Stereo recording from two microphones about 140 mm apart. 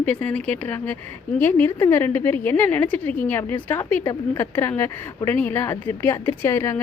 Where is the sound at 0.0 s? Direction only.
10° left (ahead or behind).